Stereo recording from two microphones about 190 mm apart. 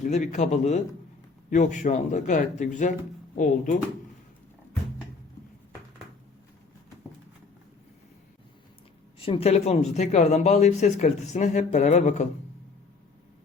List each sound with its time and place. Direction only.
0.0 s speech: 40° left (ahead or behind)
9.1 s speech: 30° left (ahead or behind)